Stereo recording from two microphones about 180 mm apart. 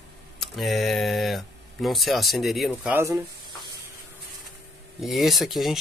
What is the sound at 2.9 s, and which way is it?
Speech, 15° right (ahead or behind).